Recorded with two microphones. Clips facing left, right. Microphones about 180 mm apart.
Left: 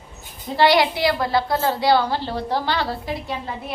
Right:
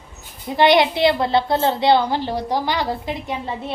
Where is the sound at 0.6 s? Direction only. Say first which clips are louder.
Right 2 dB; 20° right (ahead or behind).